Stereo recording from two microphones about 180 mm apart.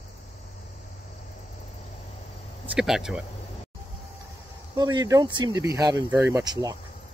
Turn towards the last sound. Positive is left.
turn(degrees=-20)  # may be behind; listen again after turning